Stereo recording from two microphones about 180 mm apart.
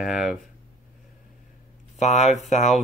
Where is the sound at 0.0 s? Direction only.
5° right (ahead or behind).